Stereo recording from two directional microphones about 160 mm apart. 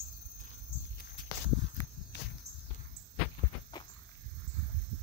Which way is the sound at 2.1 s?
90° left.